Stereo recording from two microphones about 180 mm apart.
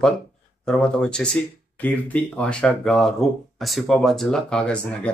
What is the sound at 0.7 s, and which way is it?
Speech, 5° left (ahead or behind).